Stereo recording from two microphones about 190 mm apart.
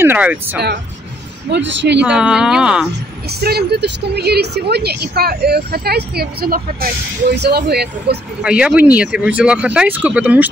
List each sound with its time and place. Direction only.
0.0 s speech: 10° right (ahead or behind)
1.5 s speech: 70° right (ahead or behind)
2.0 s speech: 5° right (ahead or behind)
3.3 s a woman's voice: 55° right (ahead or behind)
8.4 s speech: 5° right (ahead or behind)